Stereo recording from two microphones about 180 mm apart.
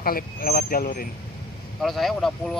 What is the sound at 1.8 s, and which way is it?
Speech, centre (ahead or behind).